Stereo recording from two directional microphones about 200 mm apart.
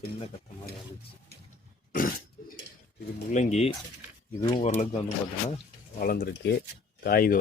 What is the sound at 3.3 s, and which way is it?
Speech, 35° left (ahead or behind).